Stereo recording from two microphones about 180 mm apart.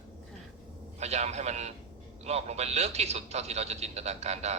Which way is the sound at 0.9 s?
40° right (ahead or behind).